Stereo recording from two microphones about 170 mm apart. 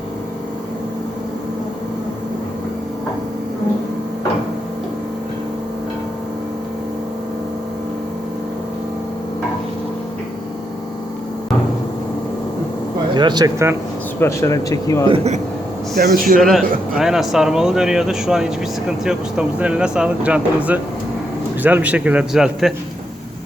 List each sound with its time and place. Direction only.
13.1 s speech: 25° right (ahead or behind)
14.2 s speech: 15° left (ahead or behind)
15.0 s speech: 35° right (ahead or behind)
16.0 s speech: 60° right (ahead or behind)
16.4 s a man's voice: centre (ahead or behind)